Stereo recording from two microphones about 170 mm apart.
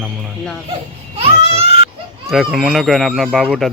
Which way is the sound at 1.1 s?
35° right (ahead or behind).